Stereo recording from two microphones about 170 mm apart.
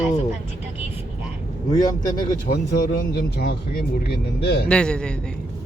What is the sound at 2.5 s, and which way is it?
Speech, 65° left (ahead or behind).